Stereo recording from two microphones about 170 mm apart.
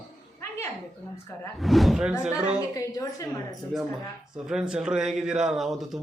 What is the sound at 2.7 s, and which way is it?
Speech, 20° left (ahead or behind).